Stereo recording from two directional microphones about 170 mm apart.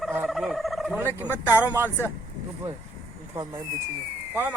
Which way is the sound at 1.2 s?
10° left (ahead or behind).